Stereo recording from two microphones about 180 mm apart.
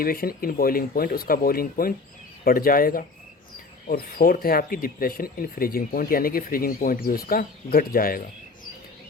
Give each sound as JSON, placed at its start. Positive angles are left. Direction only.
{"t": 0.0, "sound": "speech", "side_deg": 55}